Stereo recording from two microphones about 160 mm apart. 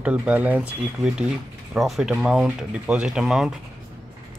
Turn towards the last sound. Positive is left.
turn(degrees=-5)  # may be behind; listen again after turning